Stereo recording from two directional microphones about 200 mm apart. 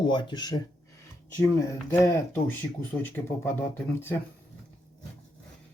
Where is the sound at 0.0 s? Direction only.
25° left (ahead or behind).